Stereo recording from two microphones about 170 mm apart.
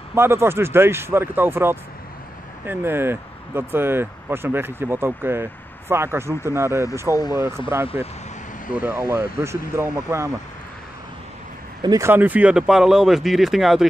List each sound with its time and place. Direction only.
0.1 s speech: 15° right (ahead or behind)
11.8 s speech: 20° right (ahead or behind); by 13.8 s centre (ahead or behind)